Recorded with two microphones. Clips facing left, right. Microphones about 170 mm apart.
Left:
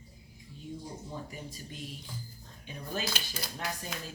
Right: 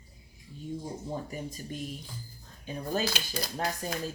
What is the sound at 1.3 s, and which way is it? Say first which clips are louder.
Speech: right 6 dB; 45° right (ahead or behind).